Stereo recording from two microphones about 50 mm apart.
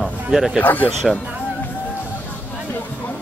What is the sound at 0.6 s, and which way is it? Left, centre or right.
Speech, left.